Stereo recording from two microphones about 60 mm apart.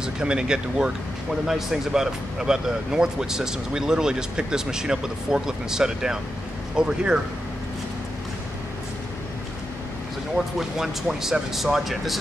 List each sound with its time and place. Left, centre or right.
0.0 s speech: centre
10.4 s speech: centre